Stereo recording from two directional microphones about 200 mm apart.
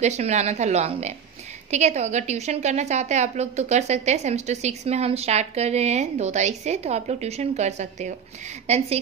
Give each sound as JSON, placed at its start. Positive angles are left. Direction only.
{"t": 0.0, "sound": "a woman's voice", "side_deg": -35}